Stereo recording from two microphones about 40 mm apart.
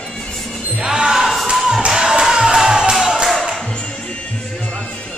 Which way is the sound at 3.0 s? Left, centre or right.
Centre.